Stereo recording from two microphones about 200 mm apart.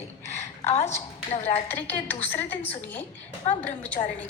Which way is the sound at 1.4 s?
10° left (ahead or behind).